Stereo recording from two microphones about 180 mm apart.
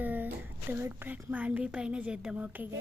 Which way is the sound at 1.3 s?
10° right (ahead or behind).